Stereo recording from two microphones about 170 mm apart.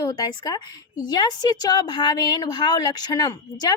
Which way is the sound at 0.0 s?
25° left (ahead or behind).